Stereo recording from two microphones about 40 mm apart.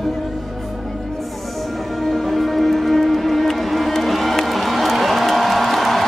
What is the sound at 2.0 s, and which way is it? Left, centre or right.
Music, centre.